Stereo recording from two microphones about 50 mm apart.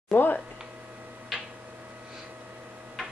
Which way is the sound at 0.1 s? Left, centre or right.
Left.